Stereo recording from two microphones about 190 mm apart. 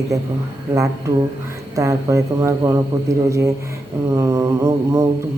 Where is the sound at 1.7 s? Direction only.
15° right (ahead or behind).